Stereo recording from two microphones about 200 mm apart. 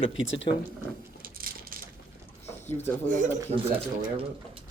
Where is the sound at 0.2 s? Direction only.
70° left (ahead or behind).